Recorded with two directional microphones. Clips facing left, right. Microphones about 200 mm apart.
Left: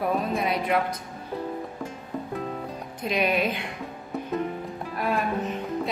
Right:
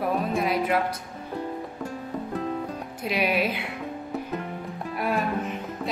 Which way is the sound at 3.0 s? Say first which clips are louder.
Left 1 dB; 5° right (ahead or behind).